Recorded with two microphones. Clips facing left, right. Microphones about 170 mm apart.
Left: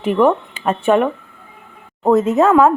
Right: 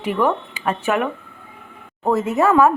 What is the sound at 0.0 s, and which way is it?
A woman's voice, 25° left (ahead or behind).